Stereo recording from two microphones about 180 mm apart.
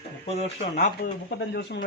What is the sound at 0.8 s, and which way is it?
Speech, 65° left (ahead or behind).